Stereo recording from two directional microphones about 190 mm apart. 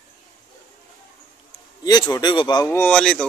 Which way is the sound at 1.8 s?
20° left (ahead or behind).